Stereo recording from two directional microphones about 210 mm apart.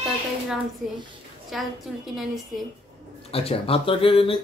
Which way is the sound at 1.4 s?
Centre (ahead or behind).